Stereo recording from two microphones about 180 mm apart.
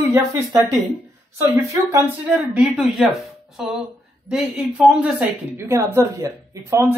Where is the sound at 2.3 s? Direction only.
5° right (ahead or behind).